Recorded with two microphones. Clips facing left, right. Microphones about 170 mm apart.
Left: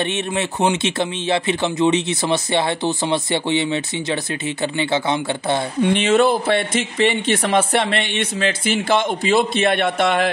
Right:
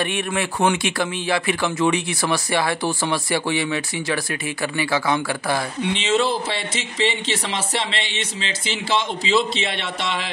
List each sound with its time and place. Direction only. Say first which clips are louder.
0.0 s speech: left 2 dB; 20° left (ahead or behind)
5.8 s speech: left 8 dB; 55° left (ahead or behind)